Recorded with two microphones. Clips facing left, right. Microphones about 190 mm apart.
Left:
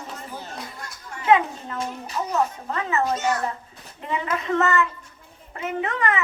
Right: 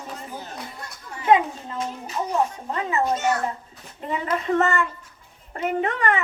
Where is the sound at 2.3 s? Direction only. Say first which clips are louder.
Even; 30° right (ahead or behind).